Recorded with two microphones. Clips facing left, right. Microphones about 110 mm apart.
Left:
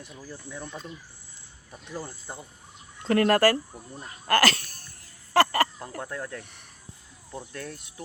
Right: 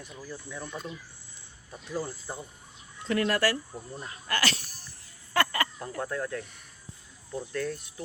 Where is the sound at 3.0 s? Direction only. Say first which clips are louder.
Left 6 dB; 50° left (ahead or behind).